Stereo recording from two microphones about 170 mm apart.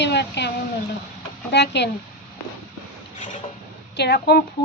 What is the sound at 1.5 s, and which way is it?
Speech, 85° left.